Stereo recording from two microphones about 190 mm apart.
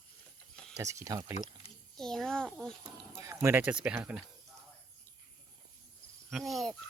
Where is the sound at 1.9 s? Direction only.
Centre (ahead or behind).